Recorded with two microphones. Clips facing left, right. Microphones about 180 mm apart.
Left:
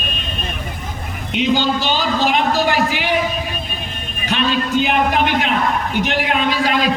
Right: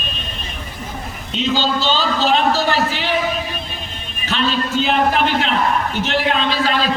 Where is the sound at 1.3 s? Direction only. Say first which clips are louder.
Left 2 dB; 15° left (ahead or behind).